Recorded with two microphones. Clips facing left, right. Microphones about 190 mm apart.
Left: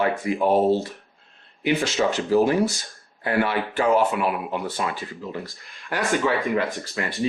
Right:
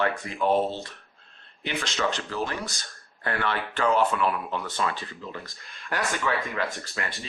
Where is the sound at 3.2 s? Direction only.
10° left (ahead or behind).